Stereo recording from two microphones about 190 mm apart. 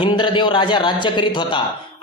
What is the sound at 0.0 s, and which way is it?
A man's voice, 25° left (ahead or behind).